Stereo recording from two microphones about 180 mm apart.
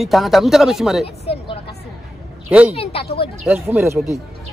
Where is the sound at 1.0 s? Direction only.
35° left (ahead or behind).